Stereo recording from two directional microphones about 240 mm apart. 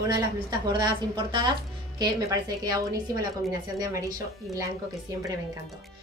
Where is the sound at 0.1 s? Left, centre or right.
Centre.